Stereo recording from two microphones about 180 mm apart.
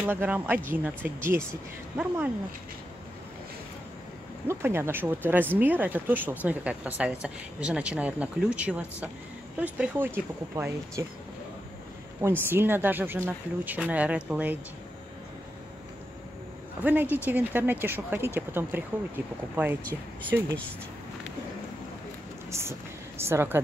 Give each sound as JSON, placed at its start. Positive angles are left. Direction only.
{"t": 0.0, "sound": "speech", "side_deg": -10}
{"t": 4.5, "sound": "speech", "side_deg": -15}
{"t": 12.2, "sound": "speech", "side_deg": -10}
{"t": 16.8, "sound": "speech", "side_deg": -10}
{"t": 22.5, "sound": "speech", "side_deg": -15}